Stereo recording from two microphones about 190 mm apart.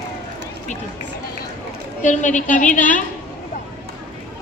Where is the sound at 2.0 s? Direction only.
40° left (ahead or behind).